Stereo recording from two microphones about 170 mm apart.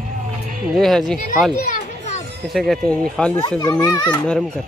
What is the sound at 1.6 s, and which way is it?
Children playing, 45° left (ahead or behind).